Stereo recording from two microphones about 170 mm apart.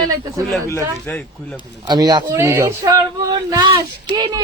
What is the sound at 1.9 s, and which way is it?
A man's voice, 25° right (ahead or behind).